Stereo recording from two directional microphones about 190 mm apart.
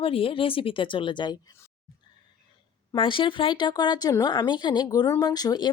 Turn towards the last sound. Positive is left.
turn(degrees=20)  # may be behind; listen again after turning